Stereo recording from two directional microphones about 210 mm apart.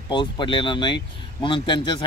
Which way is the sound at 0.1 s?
20° left (ahead or behind).